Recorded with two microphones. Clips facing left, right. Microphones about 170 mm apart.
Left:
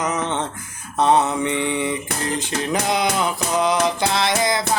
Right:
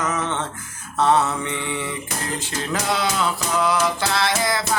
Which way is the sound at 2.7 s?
20° left (ahead or behind).